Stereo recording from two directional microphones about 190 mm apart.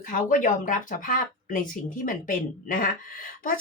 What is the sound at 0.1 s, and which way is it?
Speech, 45° left (ahead or behind).